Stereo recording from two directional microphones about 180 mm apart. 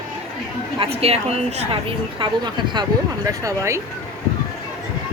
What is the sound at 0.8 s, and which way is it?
Speech, 35° right (ahead or behind).